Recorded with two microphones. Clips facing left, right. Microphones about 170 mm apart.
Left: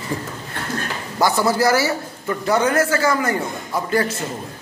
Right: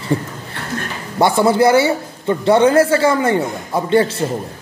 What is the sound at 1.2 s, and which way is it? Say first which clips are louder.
A man's voice: right 5 dB; 25° right (ahead or behind).